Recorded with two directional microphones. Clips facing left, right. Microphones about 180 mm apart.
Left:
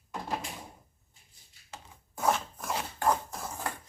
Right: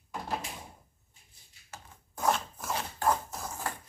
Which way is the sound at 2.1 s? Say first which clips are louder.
Left 1 dB; 10° left (ahead or behind).